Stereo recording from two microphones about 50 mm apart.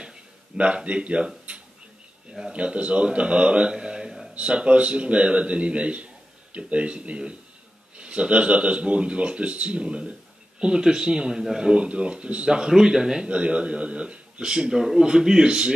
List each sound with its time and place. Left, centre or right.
0.0 s a sound: centre
2.5 s speech: right
4.4 s speech: right
12.4 s speech: centre